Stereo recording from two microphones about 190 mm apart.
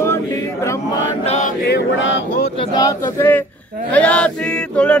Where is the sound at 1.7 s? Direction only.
70° left (ahead or behind).